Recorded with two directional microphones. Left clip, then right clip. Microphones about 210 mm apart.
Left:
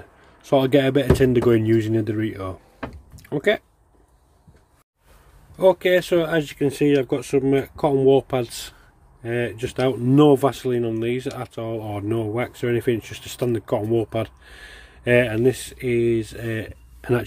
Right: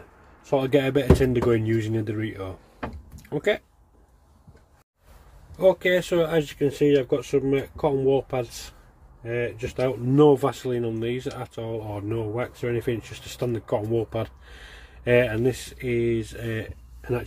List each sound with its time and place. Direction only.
0.4 s a man's voice: 40° left (ahead or behind)
0.7 s speech: 30° left (ahead or behind)
5.6 s speech: 25° left (ahead or behind)